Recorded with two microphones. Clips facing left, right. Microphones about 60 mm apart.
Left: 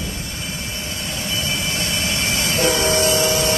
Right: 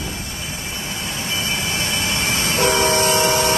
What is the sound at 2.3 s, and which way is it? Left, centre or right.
Vehicle, right.